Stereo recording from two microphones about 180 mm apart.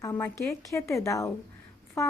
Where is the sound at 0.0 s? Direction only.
15° left (ahead or behind).